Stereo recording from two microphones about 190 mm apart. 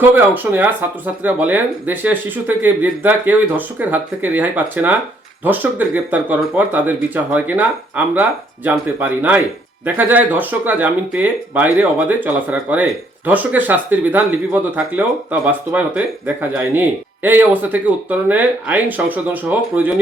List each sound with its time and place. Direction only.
0.0 s speech: 10° right (ahead or behind)